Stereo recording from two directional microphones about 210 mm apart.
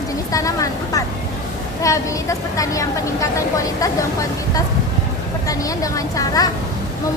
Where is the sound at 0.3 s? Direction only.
15° left (ahead or behind).